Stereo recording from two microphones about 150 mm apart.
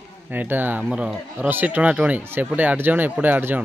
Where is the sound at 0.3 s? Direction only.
10° right (ahead or behind).